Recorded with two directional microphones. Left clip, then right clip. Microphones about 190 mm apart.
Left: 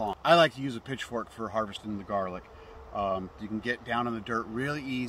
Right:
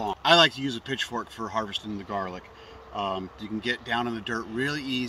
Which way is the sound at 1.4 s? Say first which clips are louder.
Right 3 dB; 10° left (ahead or behind).